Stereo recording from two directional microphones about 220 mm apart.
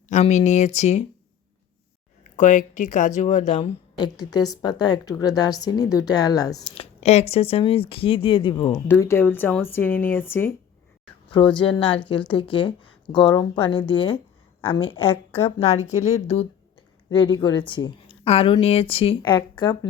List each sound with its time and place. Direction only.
0.1 s speech: 30° left (ahead or behind)
2.3 s speech: 35° left (ahead or behind)
3.9 s a woman's voice: 20° left (ahead or behind)
11.5 s speech: 20° left (ahead or behind)